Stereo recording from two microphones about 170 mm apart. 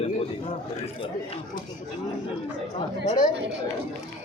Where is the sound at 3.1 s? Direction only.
50° left (ahead or behind).